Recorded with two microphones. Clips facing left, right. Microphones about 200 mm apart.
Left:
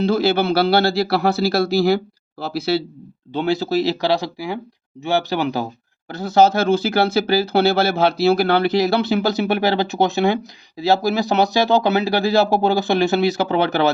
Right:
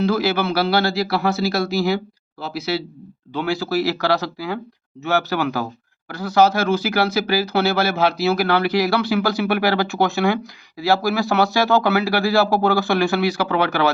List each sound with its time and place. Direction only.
0.0 s a man's voice: 25° left (ahead or behind)